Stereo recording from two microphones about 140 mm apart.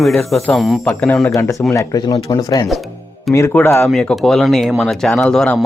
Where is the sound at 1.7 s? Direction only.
25° left (ahead or behind).